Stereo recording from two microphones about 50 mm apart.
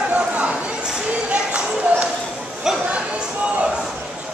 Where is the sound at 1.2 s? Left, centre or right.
Right.